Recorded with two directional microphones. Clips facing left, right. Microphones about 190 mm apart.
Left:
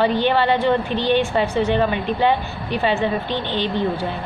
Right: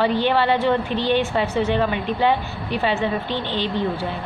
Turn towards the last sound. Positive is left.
turn(degrees=-5)  # may be behind; listen again after turning